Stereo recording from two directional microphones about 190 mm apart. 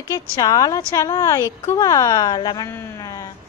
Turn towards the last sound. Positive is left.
turn(degrees=15)  # may be behind; listen again after turning